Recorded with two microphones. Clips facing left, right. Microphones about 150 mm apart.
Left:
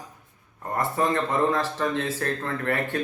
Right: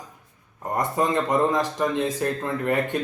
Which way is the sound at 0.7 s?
15° right (ahead or behind).